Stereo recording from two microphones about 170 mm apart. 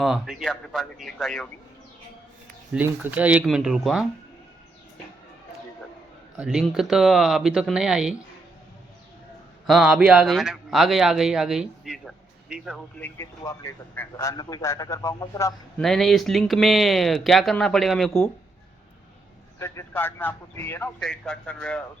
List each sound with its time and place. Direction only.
0.0 s speech: centre (ahead or behind)
2.7 s speech: 10° right (ahead or behind)
6.3 s speech: 5° right (ahead or behind)
9.6 s speech: centre (ahead or behind)
13.0 s a man's voice: 15° left (ahead or behind)
15.8 s speech: centre (ahead or behind)
19.5 s a man's voice: 15° left (ahead or behind)